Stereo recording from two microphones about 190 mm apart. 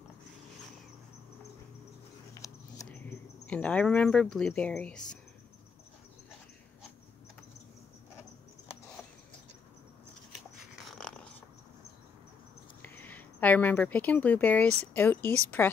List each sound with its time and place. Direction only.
2.3 s a sound: 15° left (ahead or behind)
3.4 s speech: 5° left (ahead or behind)
10.3 s dog: centre (ahead or behind)
12.8 s speech: 10° left (ahead or behind)